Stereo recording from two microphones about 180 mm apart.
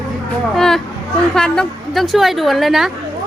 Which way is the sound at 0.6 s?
Centre (ahead or behind).